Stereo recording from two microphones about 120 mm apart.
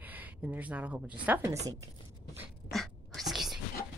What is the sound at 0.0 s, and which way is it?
A woman's voice, 15° right (ahead or behind).